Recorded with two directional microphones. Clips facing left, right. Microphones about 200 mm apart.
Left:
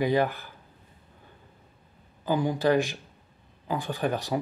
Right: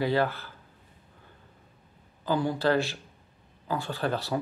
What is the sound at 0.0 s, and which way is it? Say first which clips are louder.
Speech: left 2 dB; 15° left (ahead or behind).